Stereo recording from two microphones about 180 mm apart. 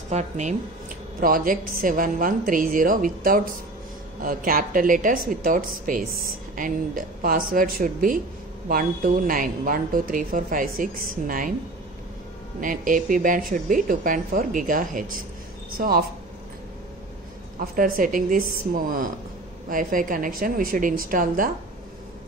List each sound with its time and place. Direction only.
0.1 s speech: 40° right (ahead or behind)
12.5 s speech: 50° right (ahead or behind)
17.6 s speech: 50° right (ahead or behind)
19.7 s speech: 50° right (ahead or behind)